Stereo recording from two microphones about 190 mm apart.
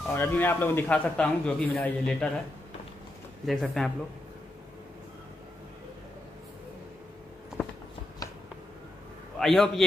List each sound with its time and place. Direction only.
0.1 s a man's voice: 10° left (ahead or behind)
3.4 s a man's voice: centre (ahead or behind)
7.6 s walk: 5° left (ahead or behind)
9.4 s a man's voice: centre (ahead or behind)